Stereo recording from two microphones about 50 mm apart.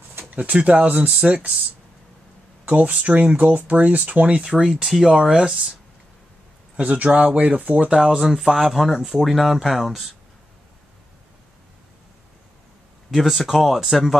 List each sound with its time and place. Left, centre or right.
0.2 s speech: right
2.6 s speech: right
4.4 s speech: centre
6.8 s speech: right
7.9 s speech: centre
8.2 s speech: centre
13.1 s speech: centre